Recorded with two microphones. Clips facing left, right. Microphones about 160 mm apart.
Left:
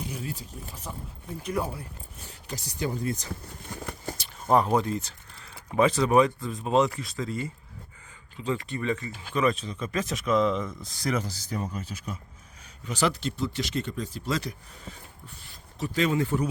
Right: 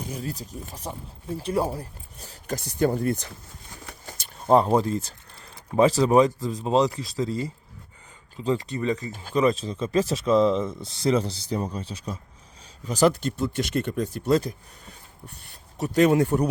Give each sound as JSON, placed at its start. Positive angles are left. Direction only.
{"t": 0.0, "sound": "speech", "side_deg": -40}
{"t": 2.6, "sound": "speech", "side_deg": -50}
{"t": 4.4, "sound": "speech", "side_deg": -30}
{"t": 15.8, "sound": "speech", "side_deg": -60}